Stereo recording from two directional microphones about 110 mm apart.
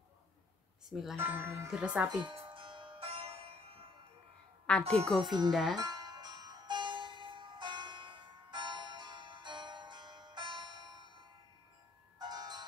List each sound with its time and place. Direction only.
0.8 s speech: centre (ahead or behind)
1.1 s speech: 20° right (ahead or behind)
1.7 s speech: 10° right (ahead or behind)
2.2 s music: 50° right (ahead or behind)
4.8 s speech: 65° right (ahead or behind)
5.5 s speech: centre (ahead or behind)
5.8 s music: 35° right (ahead or behind)
12.2 s music: 40° right (ahead or behind)